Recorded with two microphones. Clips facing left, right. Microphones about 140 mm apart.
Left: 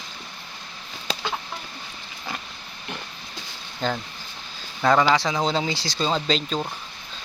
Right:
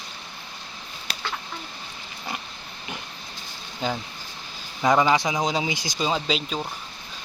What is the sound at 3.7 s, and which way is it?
Speech, 10° right (ahead or behind).